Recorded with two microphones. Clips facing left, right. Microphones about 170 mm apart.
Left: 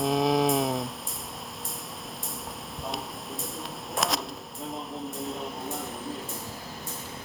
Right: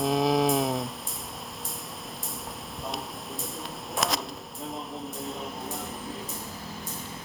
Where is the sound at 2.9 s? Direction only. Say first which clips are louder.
Left 1 dB; centre (ahead or behind).